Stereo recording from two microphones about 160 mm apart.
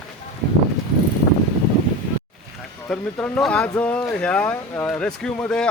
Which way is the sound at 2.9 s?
10° left (ahead or behind).